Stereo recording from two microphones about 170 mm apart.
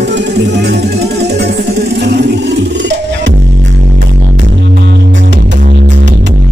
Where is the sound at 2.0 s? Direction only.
90° right.